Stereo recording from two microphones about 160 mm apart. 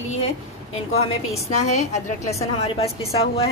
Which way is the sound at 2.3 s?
40° left (ahead or behind).